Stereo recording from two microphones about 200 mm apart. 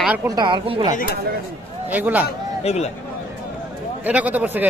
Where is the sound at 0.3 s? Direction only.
20° right (ahead or behind).